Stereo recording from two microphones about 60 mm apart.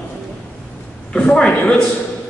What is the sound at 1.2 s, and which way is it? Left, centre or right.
Speech, centre.